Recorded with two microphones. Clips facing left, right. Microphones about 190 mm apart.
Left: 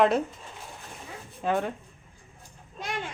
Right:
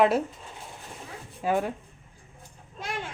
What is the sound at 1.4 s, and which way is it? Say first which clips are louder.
Speech: right 1 dB; 5° right (ahead or behind).